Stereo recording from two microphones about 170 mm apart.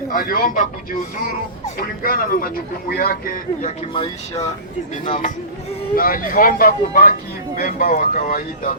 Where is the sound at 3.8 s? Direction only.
35° left (ahead or behind).